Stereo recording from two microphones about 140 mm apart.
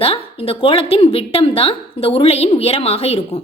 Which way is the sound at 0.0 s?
45° left (ahead or behind).